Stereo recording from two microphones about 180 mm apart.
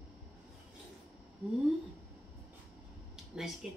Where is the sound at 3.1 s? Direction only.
5° right (ahead or behind).